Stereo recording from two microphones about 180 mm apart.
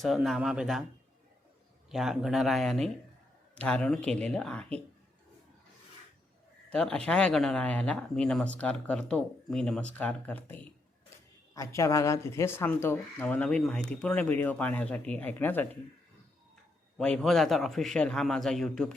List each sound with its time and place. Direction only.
0.0 s speech: centre (ahead or behind)
1.9 s speech: centre (ahead or behind)
6.7 s speech: 5° left (ahead or behind)
17.0 s speech: centre (ahead or behind)